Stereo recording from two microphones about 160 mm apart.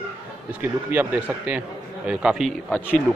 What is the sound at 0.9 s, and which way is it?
A man's voice, 10° right (ahead or behind).